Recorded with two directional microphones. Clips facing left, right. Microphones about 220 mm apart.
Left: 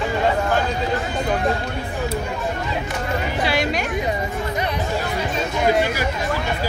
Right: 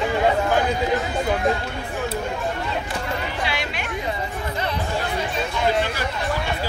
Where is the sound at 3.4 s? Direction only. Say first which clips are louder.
Left 7 dB; 40° left (ahead or behind).